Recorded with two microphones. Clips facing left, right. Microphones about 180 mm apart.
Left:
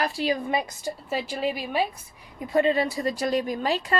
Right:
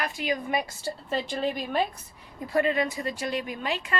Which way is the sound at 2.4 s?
25° left (ahead or behind).